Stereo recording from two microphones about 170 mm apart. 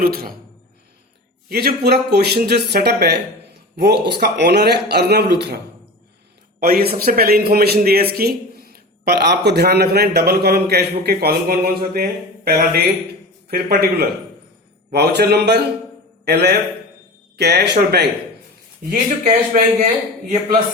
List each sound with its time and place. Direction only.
0.0 s speech: 60° right (ahead or behind)
1.5 s a man's voice: 65° right (ahead or behind)
6.6 s a man's voice: 60° right (ahead or behind)
18.9 s speech: 55° right (ahead or behind)